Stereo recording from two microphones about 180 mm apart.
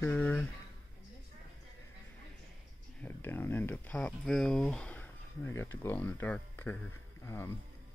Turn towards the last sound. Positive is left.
turn(degrees=15)  # may be behind; listen again after turning